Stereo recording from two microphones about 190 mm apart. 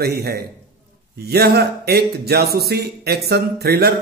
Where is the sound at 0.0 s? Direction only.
55° right (ahead or behind).